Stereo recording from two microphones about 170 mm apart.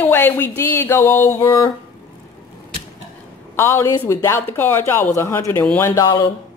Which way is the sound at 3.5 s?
15° left (ahead or behind).